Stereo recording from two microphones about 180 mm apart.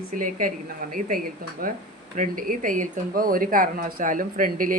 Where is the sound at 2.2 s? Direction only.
50° right (ahead or behind).